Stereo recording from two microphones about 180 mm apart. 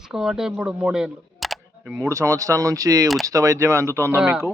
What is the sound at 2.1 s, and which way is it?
A man's voice, 15° right (ahead or behind).